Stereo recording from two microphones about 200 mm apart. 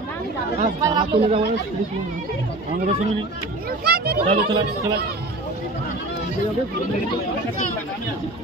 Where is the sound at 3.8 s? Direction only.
50° right (ahead or behind).